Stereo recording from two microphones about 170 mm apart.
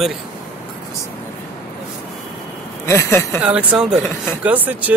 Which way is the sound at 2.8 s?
15° left (ahead or behind).